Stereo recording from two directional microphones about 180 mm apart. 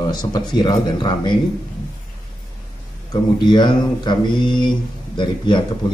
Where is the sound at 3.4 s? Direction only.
25° left (ahead or behind).